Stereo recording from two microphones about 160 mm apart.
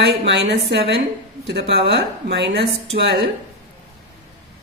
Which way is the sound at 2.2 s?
90° right.